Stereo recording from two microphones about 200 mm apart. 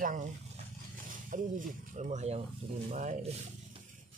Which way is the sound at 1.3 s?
40° right (ahead or behind).